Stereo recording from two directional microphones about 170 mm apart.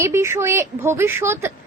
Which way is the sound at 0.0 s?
15° right (ahead or behind).